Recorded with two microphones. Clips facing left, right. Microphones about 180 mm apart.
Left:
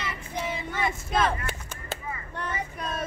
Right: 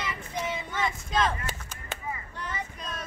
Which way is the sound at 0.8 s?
60° left (ahead or behind).